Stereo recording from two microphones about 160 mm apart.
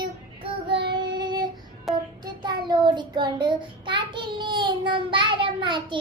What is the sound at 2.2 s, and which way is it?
Child singing, 25° right (ahead or behind).